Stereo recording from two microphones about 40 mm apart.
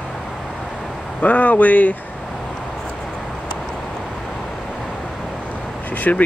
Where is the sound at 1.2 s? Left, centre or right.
Left.